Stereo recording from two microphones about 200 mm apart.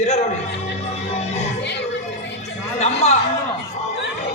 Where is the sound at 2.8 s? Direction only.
30° left (ahead or behind).